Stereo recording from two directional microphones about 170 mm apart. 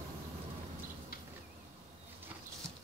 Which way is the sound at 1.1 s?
65° left (ahead or behind).